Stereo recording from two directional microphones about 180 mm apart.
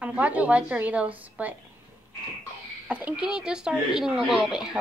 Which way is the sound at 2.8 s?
5° right (ahead or behind).